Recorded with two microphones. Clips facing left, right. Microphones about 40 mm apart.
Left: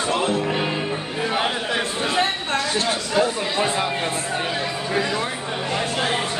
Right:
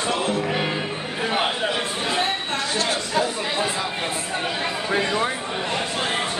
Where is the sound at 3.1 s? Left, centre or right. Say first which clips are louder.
Left 4 dB; left.